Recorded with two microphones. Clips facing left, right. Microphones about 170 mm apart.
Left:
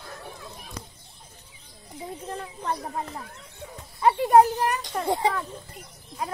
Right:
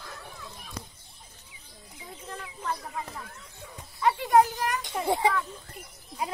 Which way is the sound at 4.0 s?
25° left (ahead or behind).